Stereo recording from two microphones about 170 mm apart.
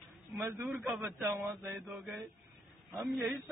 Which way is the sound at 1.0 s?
10° right (ahead or behind).